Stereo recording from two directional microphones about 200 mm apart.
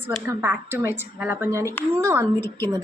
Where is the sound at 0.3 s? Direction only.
10° right (ahead or behind).